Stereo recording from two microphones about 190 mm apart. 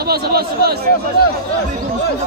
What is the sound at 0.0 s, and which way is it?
Speech, 55° right (ahead or behind).